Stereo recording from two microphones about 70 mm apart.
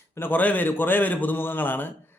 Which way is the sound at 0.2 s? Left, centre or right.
Left.